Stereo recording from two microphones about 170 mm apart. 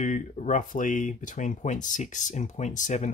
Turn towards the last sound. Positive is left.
turn(degrees=45)  # may be behind; listen again after turning